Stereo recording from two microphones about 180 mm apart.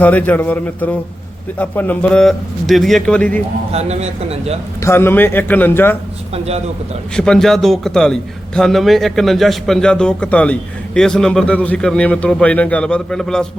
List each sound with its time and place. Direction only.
0.0 s speech: 10° left (ahead or behind)
3.7 s speech: 35° right (ahead or behind)
4.8 s speech: 15° left (ahead or behind)
6.3 s speech: 35° right (ahead or behind)
7.2 s a man's voice: 5° left (ahead or behind)